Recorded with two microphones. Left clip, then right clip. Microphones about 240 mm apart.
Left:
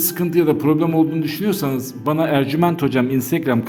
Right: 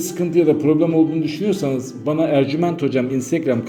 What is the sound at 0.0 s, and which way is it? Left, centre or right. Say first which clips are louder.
Speech: right 1 dB; left.